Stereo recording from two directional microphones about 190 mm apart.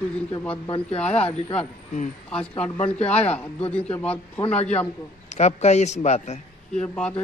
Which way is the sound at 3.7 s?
5° left (ahead or behind).